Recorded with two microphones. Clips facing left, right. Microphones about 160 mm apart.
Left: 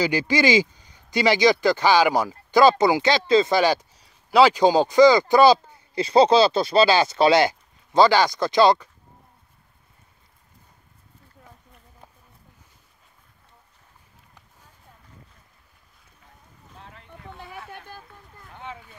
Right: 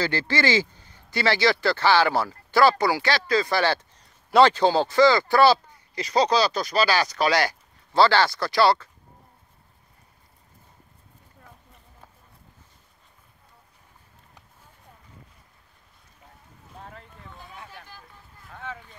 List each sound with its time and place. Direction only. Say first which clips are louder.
0.0 s speech: left 4 dB; 15° left (ahead or behind)
5.9 s speech: left 6 dB; 30° left (ahead or behind)
17.5 s boat: left 5 dB; 60° left (ahead or behind)